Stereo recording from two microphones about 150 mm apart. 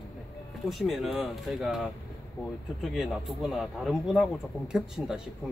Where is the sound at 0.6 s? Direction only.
Centre (ahead or behind).